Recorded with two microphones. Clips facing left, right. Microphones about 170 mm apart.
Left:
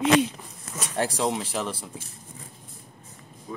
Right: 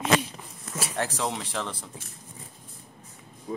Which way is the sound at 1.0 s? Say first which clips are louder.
Left 5 dB; 15° left (ahead or behind).